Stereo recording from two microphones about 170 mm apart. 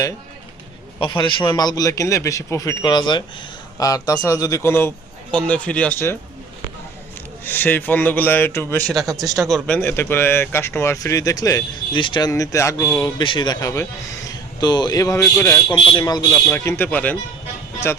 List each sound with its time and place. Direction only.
0.9 s a man's voice: 30° left (ahead or behind); by 6.1 s 10° left (ahead or behind)
7.4 s speech: 10° left (ahead or behind)
8.9 s speech: centre (ahead or behind)
9.7 s speech: 10° left (ahead or behind)
14.3 s a sound: 25° left (ahead or behind)
15.2 s speech: 15° left (ahead or behind)
15.7 s a man's voice: 25° left (ahead or behind)
16.3 s speech: 10° left (ahead or behind)